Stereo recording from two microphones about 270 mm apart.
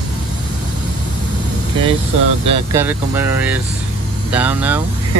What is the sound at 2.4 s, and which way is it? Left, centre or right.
Speech, right.